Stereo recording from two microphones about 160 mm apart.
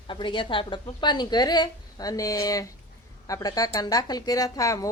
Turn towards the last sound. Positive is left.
turn(degrees=20)  # may be behind; listen again after turning